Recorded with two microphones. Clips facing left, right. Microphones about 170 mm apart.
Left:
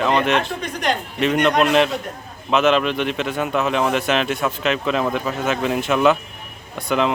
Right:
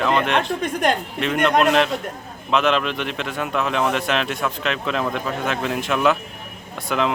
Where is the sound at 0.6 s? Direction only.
50° right (ahead or behind).